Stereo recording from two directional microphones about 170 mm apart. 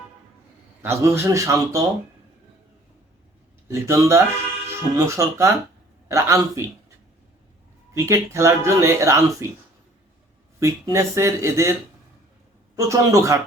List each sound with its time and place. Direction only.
0.8 s speech: 15° right (ahead or behind)
3.7 s speech: 15° right (ahead or behind)
7.9 s speech: 15° right (ahead or behind)
10.6 s speech: 15° right (ahead or behind)
12.7 s speech: 20° right (ahead or behind)